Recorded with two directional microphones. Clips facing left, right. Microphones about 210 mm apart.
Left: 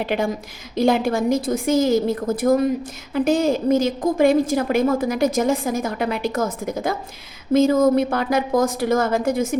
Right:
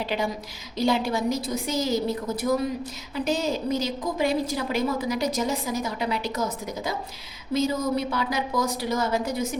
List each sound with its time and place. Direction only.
0.0 s a woman's voice: 55° left (ahead or behind)